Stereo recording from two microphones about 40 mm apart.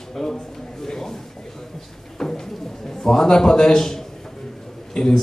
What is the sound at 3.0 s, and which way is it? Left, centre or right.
A woman's voice, centre.